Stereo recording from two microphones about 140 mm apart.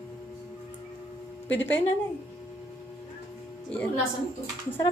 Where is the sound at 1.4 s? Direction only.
15° left (ahead or behind).